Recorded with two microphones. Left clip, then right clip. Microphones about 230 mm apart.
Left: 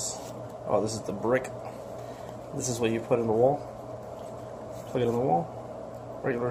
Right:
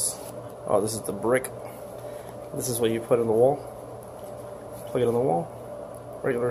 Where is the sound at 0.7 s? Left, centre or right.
Centre.